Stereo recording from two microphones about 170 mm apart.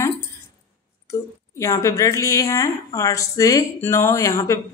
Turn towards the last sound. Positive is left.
turn(degrees=20)  # may be behind; listen again after turning